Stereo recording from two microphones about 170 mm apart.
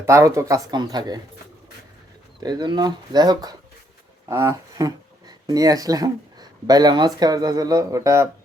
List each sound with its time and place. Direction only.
0.0 s speech: 15° right (ahead or behind)
2.4 s speech: 25° right (ahead or behind)